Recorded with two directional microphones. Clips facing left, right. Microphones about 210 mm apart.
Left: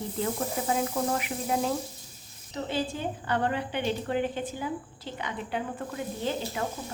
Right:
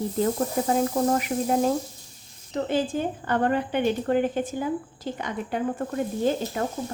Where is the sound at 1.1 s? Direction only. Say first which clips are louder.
Right 6 dB; 40° right (ahead or behind).